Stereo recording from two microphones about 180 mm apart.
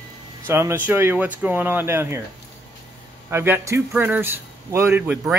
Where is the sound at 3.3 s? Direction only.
15° right (ahead or behind).